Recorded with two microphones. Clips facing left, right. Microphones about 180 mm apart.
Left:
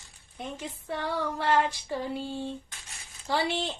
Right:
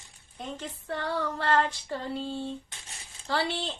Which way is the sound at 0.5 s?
10° left (ahead or behind).